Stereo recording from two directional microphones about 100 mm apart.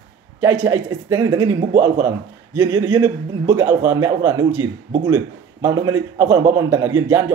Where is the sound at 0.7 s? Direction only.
35° right (ahead or behind).